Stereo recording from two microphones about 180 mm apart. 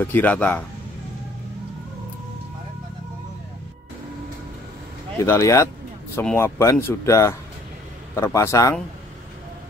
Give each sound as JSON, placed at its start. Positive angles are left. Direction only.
{"t": 0.0, "sound": "speech", "side_deg": 10}
{"t": 5.2, "sound": "speech", "side_deg": 15}